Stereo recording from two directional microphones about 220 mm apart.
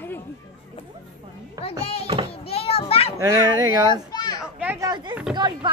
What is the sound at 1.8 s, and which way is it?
A woman's voice, 25° left (ahead or behind).